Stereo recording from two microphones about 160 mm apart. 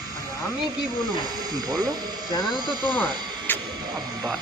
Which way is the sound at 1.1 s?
25° right (ahead or behind).